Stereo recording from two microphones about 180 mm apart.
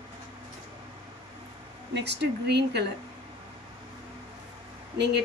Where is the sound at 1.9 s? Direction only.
70° right (ahead or behind).